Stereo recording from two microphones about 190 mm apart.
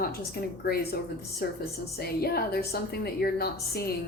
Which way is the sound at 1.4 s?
55° left (ahead or behind).